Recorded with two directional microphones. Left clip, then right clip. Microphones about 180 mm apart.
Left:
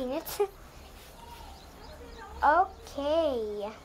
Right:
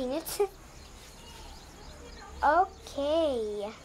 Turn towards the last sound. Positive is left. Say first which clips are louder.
# even
turn(degrees=-5)  # may be behind; listen again after turning